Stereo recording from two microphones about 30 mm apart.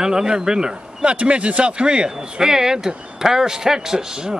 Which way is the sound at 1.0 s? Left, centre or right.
Right.